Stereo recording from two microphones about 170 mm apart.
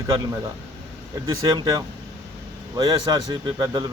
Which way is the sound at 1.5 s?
25° right (ahead or behind).